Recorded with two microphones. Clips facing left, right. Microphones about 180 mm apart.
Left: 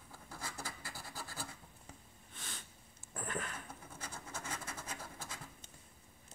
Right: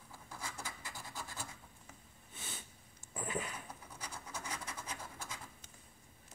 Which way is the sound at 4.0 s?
50° left (ahead or behind).